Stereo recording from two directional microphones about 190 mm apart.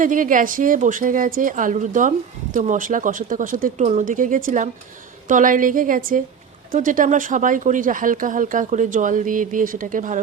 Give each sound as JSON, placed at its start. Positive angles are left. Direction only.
{"t": 0.0, "sound": "a woman's voice", "side_deg": -45}